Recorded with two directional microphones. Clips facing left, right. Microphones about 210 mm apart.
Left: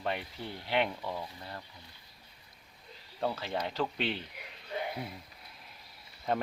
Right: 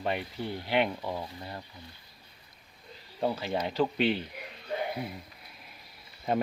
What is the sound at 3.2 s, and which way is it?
Speech, 15° right (ahead or behind).